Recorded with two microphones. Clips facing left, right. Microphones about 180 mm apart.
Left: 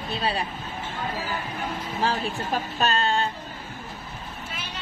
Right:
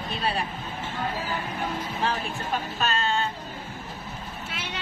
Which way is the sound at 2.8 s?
35° left (ahead or behind).